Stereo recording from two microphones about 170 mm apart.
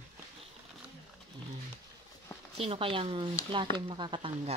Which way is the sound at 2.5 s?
35° right (ahead or behind).